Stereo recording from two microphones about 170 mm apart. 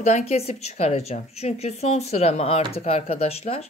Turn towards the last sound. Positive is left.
turn(degrees=35)  # may be behind; listen again after turning